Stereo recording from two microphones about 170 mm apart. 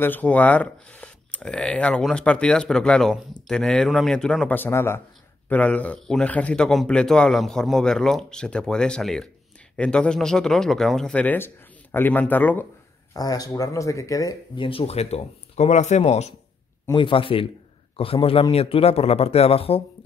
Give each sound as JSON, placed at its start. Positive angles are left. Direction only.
{"t": 0.0, "sound": "a man's voice", "side_deg": 10}
{"t": 13.1, "sound": "speech", "side_deg": 20}